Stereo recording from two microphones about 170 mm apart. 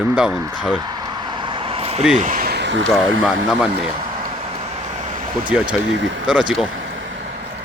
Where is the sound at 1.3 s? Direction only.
30° right (ahead or behind).